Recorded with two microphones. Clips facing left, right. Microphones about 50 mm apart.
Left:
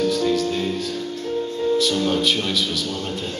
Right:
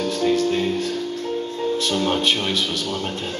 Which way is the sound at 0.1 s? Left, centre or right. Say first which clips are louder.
Right 1 dB; right.